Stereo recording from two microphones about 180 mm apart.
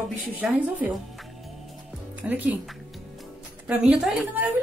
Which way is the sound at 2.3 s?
10° right (ahead or behind).